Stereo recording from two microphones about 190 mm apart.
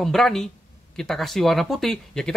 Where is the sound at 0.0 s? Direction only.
Centre (ahead or behind).